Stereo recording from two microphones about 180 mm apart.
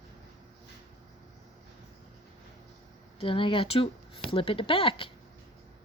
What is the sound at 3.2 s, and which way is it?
Speech, 30° left (ahead or behind).